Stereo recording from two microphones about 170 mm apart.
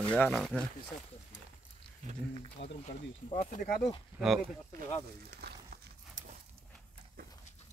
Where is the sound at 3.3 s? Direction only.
45° left (ahead or behind).